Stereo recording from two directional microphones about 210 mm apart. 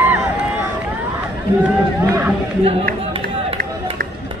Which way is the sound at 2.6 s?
25° right (ahead or behind).